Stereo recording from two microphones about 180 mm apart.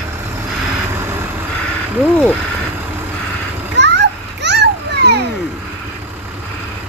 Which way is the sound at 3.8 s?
70° right (ahead or behind).